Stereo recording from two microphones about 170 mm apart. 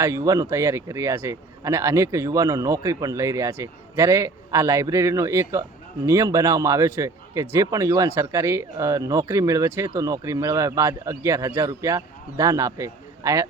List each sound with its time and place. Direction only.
0.0 s a man's voice: 15° right (ahead or behind)